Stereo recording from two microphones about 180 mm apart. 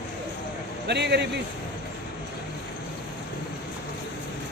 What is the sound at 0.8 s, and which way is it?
Speech, 70° right (ahead or behind).